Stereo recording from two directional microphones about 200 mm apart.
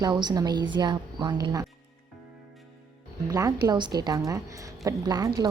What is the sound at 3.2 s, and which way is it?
A woman's voice, 15° right (ahead or behind).